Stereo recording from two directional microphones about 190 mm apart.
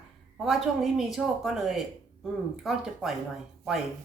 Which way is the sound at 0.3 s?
Centre (ahead or behind).